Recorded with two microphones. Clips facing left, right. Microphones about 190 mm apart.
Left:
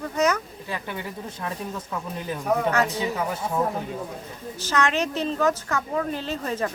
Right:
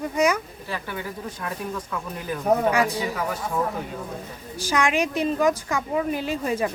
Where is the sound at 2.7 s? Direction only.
10° right (ahead or behind).